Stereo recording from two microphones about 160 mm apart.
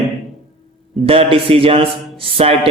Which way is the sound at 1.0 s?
35° right (ahead or behind).